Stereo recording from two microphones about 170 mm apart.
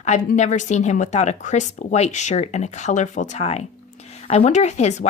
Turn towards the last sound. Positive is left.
turn(degrees=40)  # may be behind; listen again after turning